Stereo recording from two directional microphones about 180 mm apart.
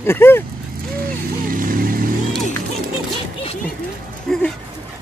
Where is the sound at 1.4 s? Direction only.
50° right (ahead or behind).